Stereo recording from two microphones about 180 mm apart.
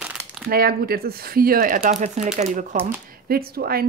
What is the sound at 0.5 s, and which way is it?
Speech, 55° right (ahead or behind).